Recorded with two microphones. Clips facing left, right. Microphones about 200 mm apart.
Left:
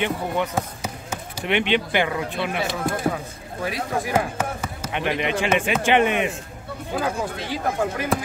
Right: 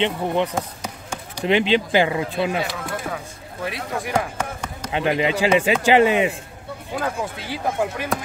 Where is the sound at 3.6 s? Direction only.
5° left (ahead or behind).